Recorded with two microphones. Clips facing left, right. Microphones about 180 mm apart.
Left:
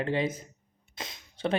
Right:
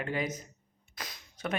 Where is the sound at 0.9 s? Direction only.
25° left (ahead or behind).